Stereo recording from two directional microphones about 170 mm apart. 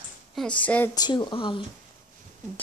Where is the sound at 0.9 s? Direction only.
25° left (ahead or behind).